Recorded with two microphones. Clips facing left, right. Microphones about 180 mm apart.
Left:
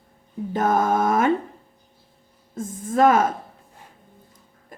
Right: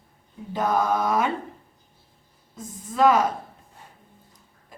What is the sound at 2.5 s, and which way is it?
Speech, 50° left (ahead or behind).